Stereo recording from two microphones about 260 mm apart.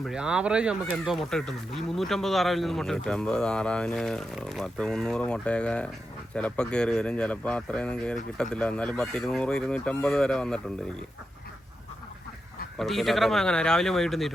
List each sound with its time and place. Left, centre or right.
0.0 s speech: centre
12.7 s speech: centre